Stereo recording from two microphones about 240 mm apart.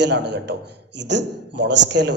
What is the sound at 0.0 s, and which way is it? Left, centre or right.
A man's voice, right.